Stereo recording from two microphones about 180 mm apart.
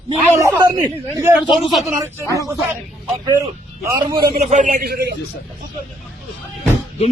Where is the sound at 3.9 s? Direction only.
20° right (ahead or behind).